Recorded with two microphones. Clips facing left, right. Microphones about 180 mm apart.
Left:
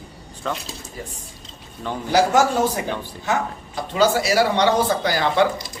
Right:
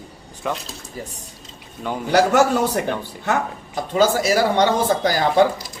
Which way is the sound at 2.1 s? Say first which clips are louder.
Right 1 dB; 60° right (ahead or behind).